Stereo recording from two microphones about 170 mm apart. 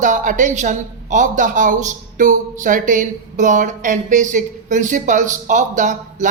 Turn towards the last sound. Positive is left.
turn(degrees=-45)  # may be behind; listen again after turning